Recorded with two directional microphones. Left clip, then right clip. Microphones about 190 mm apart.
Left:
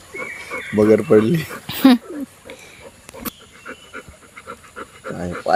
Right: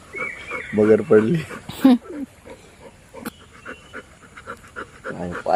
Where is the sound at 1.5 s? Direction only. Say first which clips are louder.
Left 2 dB; centre (ahead or behind).